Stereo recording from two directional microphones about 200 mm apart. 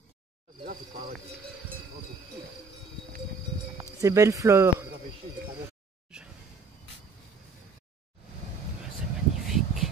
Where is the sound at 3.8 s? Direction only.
15° right (ahead or behind).